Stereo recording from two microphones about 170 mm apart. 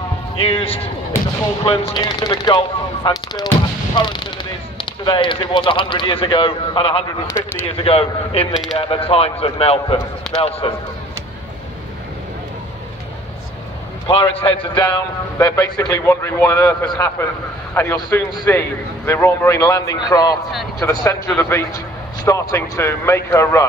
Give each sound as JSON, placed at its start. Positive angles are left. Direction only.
{"t": 0.4, "sound": "speech", "side_deg": 35}
{"t": 10.3, "sound": "speech", "side_deg": 5}
{"t": 10.6, "sound": "speech", "side_deg": 35}
{"t": 14.0, "sound": "a man's voice", "side_deg": 30}